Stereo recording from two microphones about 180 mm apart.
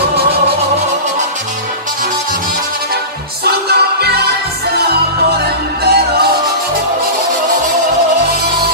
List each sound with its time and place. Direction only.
3.4 s music: 60° right (ahead or behind)
5.9 s music: 60° right (ahead or behind)